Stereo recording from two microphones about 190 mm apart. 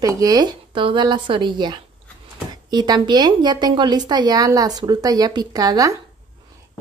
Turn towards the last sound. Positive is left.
turn(degrees=-20)  # may be behind; listen again after turning